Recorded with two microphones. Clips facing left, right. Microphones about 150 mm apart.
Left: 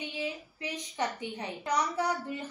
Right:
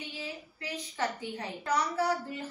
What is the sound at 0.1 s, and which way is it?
A woman's voice, 20° left (ahead or behind).